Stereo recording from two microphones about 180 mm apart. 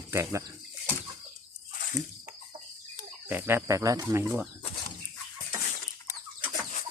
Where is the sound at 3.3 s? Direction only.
10° right (ahead or behind).